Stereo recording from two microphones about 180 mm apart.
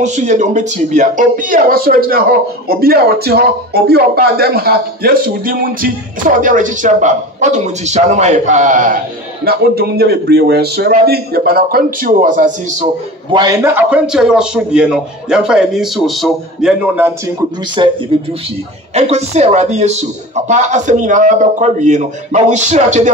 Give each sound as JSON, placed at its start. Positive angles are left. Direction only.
{"t": 0.0, "sound": "speech", "side_deg": -40}
{"t": 13.3, "sound": "a man's voice", "side_deg": -20}
{"t": 17.8, "sound": "speech", "side_deg": -25}
{"t": 18.9, "sound": "a man's voice", "side_deg": -35}